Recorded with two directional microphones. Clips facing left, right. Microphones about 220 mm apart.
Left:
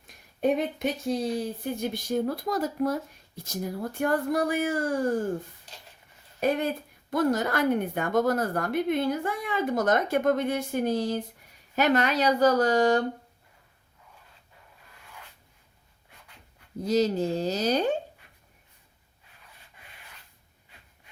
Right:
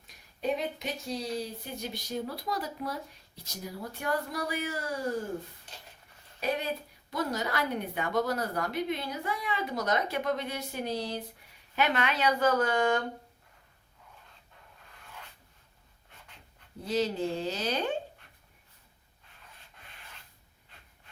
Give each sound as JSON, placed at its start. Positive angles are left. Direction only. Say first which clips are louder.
{"t": 0.4, "sound": "speech", "louder": "left 7 dB", "side_deg": 55}
{"t": 6.4, "sound": "speech", "louder": "left 6 dB", "side_deg": 50}
{"t": 16.8, "sound": "speech", "louder": "left 5 dB", "side_deg": 40}